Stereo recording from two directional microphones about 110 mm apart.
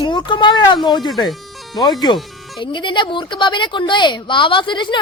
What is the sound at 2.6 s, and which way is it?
Speech, 45° left (ahead or behind).